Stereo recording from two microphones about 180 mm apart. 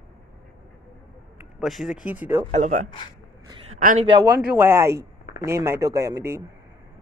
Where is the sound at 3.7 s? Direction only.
45° right (ahead or behind).